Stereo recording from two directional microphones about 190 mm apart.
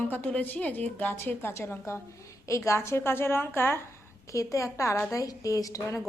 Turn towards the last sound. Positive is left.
turn(degrees=15)  # may be behind; listen again after turning